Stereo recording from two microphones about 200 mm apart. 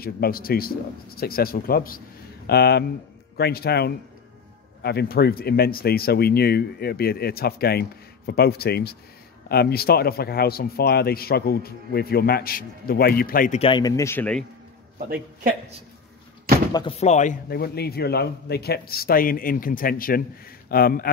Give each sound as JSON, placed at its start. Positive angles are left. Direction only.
{"t": 0.0, "sound": "speech", "side_deg": 50}
{"t": 13.6, "sound": "speech", "side_deg": 25}
{"t": 15.0, "sound": "a man's voice", "side_deg": -45}
{"t": 16.7, "sound": "a man's voice", "side_deg": 30}